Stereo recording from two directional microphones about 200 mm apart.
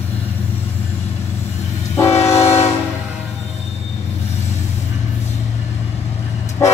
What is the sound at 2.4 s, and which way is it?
Train, 30° left (ahead or behind).